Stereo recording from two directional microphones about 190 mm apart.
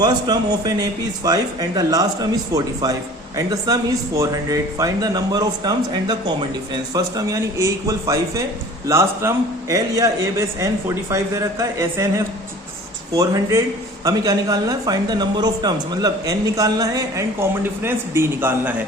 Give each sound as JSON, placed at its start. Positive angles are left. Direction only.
{"t": 0.0, "sound": "a man's voice", "side_deg": -20}